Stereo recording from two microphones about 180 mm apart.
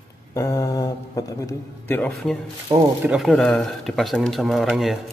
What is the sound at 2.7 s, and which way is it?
Speech, 20° right (ahead or behind).